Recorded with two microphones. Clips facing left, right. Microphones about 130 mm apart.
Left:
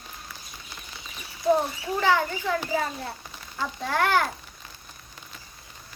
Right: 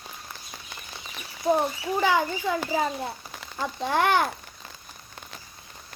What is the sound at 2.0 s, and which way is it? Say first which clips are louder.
Speech: even; 15° right (ahead or behind).